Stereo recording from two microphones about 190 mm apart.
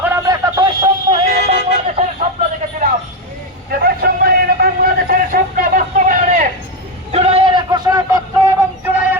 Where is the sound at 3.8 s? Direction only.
55° right (ahead or behind).